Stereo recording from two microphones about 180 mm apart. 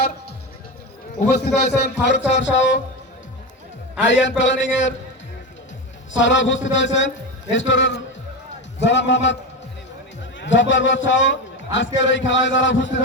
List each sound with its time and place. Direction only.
1.3 s a man's voice: 65° left (ahead or behind)
1.7 s speech: 80° left
4.0 s a man's voice: 90° left
6.1 s a man's voice: 90° left
10.4 s a man's voice: 90° left